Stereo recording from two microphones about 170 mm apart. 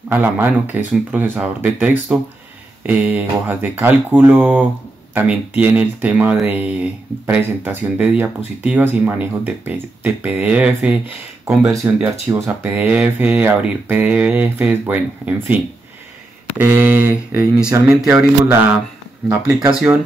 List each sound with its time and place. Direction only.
0.1 s speech: 10° right (ahead or behind)
16.5 s speech: 10° right (ahead or behind)
19.7 s speech: 5° right (ahead or behind)